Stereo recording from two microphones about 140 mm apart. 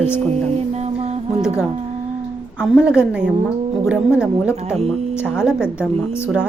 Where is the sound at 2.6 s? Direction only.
5° right (ahead or behind).